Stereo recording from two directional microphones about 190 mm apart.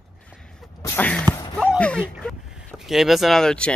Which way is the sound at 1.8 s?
5° left (ahead or behind).